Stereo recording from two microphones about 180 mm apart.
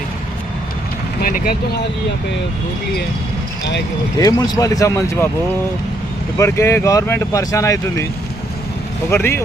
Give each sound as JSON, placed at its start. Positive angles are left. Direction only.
{"t": 1.2, "sound": "speech", "side_deg": 55}
{"t": 4.2, "sound": "speech", "side_deg": 20}
{"t": 6.3, "sound": "speech", "side_deg": 15}
{"t": 9.0, "sound": "speech", "side_deg": 15}